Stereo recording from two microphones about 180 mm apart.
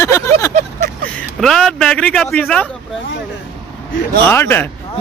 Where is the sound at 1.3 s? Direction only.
Centre (ahead or behind).